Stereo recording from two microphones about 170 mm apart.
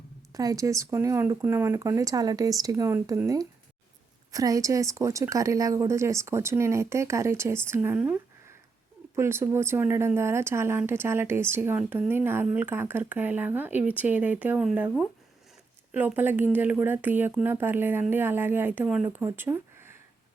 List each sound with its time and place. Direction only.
0.3 s speech: 20° right (ahead or behind)
15.9 s speech: 10° right (ahead or behind)